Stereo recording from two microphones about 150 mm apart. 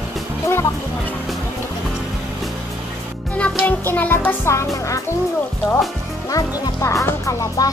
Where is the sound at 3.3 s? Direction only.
10° left (ahead or behind).